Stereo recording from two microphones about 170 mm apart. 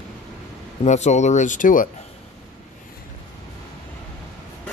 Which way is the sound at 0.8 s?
40° left (ahead or behind).